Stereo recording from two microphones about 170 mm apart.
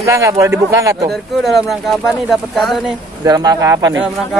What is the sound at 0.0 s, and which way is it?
A man's voice, 15° right (ahead or behind).